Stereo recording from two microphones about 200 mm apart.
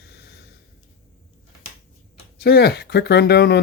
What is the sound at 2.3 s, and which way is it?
Speech, 50° left (ahead or behind).